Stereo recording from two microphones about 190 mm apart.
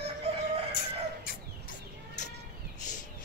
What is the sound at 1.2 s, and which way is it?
Chicken, 50° left (ahead or behind).